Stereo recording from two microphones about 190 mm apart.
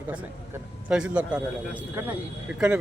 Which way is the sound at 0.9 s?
5° right (ahead or behind).